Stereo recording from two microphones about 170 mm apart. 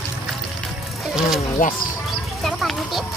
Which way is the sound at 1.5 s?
50° left (ahead or behind).